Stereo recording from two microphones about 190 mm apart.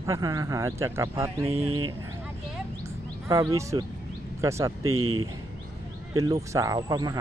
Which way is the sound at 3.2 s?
15° right (ahead or behind).